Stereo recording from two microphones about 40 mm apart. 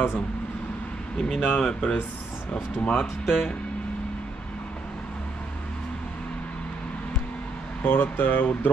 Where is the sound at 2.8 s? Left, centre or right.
Left.